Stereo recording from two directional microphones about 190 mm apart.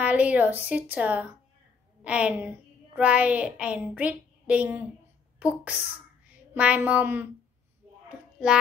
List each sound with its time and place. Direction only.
0.0 s a woman's voice: 5° right (ahead or behind)
6.3 s a sound: 5° right (ahead or behind)
6.9 s a woman's voice: 10° right (ahead or behind)